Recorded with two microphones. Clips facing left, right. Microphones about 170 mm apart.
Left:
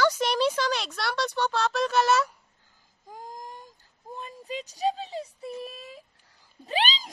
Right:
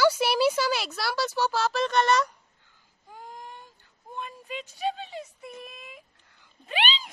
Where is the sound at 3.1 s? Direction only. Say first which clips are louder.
Left 2 dB; 40° left (ahead or behind).